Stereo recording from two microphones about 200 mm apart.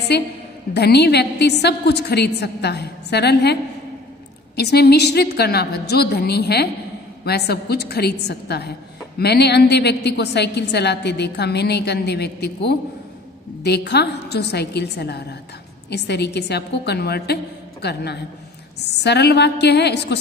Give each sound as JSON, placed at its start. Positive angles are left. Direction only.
{"t": 0.1, "sound": "a woman's voice", "side_deg": 55}
{"t": 4.6, "sound": "a woman's voice", "side_deg": 55}